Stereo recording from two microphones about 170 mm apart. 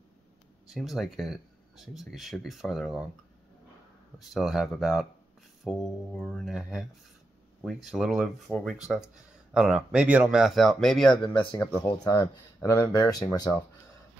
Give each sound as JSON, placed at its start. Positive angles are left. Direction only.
{"t": 0.7, "sound": "speech", "side_deg": 0}
{"t": 4.2, "sound": "speech", "side_deg": 0}
{"t": 11.9, "sound": "speech", "side_deg": 20}